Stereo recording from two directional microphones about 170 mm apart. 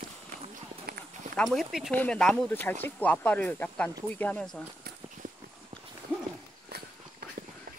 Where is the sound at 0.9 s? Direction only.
65° right (ahead or behind).